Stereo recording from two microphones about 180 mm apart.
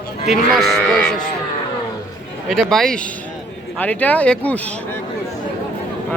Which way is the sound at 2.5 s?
Centre (ahead or behind).